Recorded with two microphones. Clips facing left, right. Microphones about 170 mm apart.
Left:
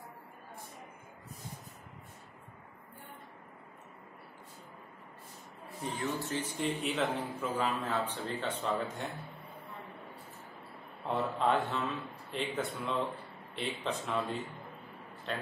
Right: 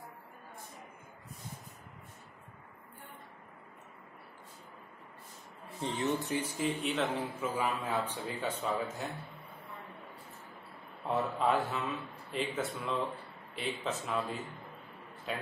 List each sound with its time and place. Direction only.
5.8 s speech: 25° right (ahead or behind)
6.6 s a man's voice: centre (ahead or behind)
11.1 s a man's voice: 5° right (ahead or behind)